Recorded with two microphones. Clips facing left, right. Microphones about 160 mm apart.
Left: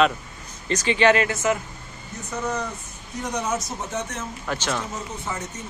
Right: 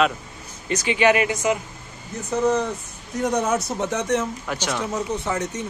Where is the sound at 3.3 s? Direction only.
55° right (ahead or behind); by 4.2 s 75° right (ahead or behind).